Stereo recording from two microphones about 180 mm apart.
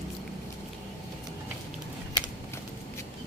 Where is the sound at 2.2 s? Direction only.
25° left (ahead or behind).